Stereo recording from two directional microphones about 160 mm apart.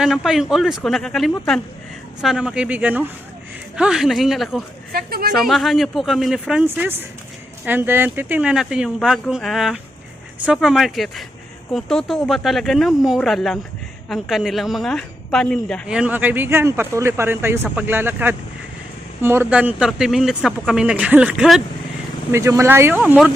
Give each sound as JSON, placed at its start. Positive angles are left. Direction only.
{"t": 0.0, "sound": "speech", "side_deg": -5}
{"t": 4.9, "sound": "speech", "side_deg": -70}
{"t": 5.4, "sound": "speech", "side_deg": 0}
{"t": 6.7, "sound": "speech", "side_deg": -15}
{"t": 15.9, "sound": "speech", "side_deg": -10}
{"t": 22.3, "sound": "speech", "side_deg": -20}